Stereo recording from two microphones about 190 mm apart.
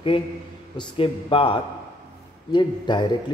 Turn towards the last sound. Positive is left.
turn(degrees=25)  # may be behind; listen again after turning